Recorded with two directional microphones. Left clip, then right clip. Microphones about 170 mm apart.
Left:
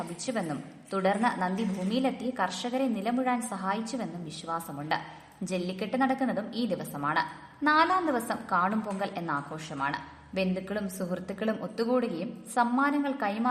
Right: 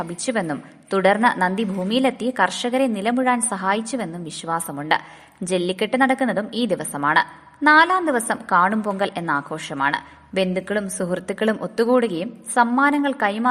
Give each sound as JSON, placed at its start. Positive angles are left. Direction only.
{"t": 0.0, "sound": "a woman's voice", "side_deg": -40}